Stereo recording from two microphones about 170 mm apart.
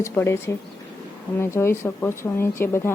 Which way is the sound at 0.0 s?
15° left (ahead or behind).